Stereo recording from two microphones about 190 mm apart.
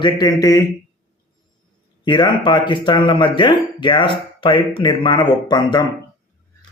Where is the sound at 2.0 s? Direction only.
25° left (ahead or behind).